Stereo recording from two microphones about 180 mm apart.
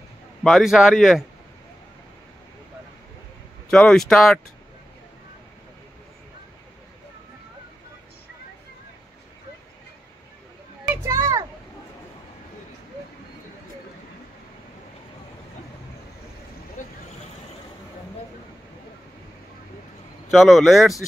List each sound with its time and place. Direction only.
0.4 s a man's voice: centre (ahead or behind)
3.7 s a man's voice: centre (ahead or behind)
10.9 s children playing: 15° right (ahead or behind)
16.8 s vehicle: 45° left (ahead or behind)
20.2 s a man's voice: centre (ahead or behind)